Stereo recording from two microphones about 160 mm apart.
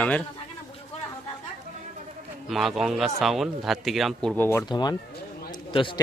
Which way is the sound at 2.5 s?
Centre (ahead or behind).